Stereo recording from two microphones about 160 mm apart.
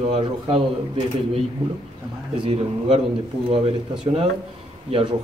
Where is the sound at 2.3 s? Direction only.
35° right (ahead or behind).